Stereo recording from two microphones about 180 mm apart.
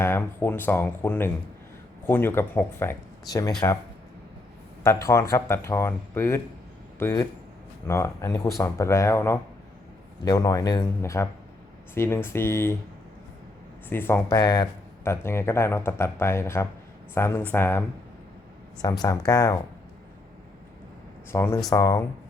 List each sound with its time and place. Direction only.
0.0 s speech: 10° left (ahead or behind)
4.8 s speech: 15° left (ahead or behind)
13.9 s speech: 10° left (ahead or behind)
21.3 s speech: 15° left (ahead or behind)